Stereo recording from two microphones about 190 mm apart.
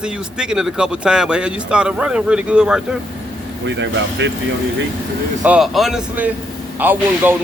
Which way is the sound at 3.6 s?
70° right (ahead or behind).